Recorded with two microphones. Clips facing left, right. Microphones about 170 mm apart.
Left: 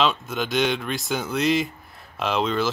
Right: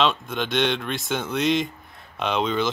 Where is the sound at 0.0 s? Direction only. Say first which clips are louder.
Even; centre (ahead or behind).